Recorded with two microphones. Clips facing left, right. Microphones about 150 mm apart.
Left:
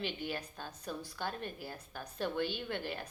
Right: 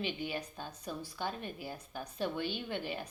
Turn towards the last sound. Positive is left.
turn(degrees=-15)  # may be behind; listen again after turning